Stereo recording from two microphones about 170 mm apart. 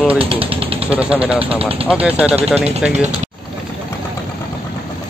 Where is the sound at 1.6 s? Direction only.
35° right (ahead or behind).